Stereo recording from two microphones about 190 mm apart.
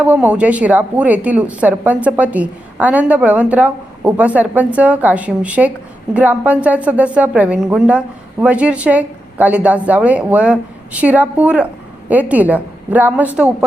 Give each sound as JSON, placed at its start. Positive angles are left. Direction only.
{"t": 0.0, "sound": "a woman's voice", "side_deg": -10}